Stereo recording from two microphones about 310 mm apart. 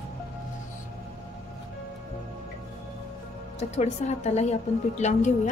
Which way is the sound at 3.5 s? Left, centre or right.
Left.